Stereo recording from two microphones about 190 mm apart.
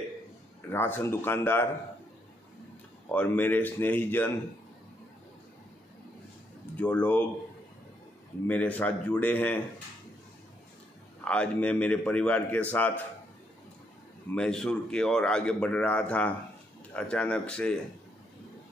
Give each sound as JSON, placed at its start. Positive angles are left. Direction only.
{"t": 0.7, "sound": "a man's voice", "side_deg": 10}
{"t": 3.1, "sound": "a man's voice", "side_deg": 10}
{"t": 6.8, "sound": "a man's voice", "side_deg": 5}
{"t": 8.5, "sound": "a man's voice", "side_deg": 10}
{"t": 11.2, "sound": "a man's voice", "side_deg": 5}
{"t": 14.3, "sound": "a man's voice", "side_deg": 5}